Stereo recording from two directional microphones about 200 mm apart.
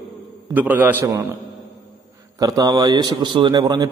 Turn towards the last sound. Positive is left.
turn(degrees=-20)  # may be behind; listen again after turning